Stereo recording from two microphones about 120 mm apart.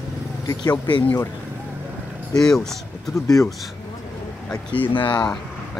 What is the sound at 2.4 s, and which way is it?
Speech, 5° left (ahead or behind).